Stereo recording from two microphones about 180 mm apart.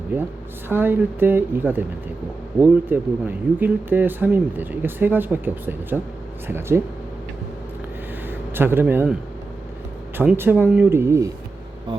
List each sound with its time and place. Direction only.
0.7 s speech: 10° right (ahead or behind)
8.3 s speech: 10° right (ahead or behind)
10.2 s speech: 10° right (ahead or behind)